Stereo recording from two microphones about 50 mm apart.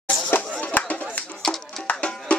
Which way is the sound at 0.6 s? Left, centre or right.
Left.